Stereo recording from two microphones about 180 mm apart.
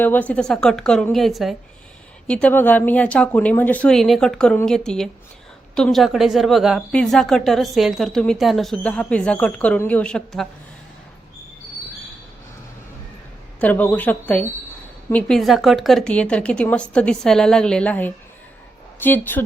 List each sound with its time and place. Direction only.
0.0 s a woman's voice: 10° left (ahead or behind)
13.6 s a woman's voice: 10° left (ahead or behind)